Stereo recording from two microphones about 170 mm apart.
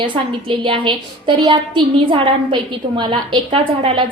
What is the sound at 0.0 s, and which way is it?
A woman's voice, 30° right (ahead or behind).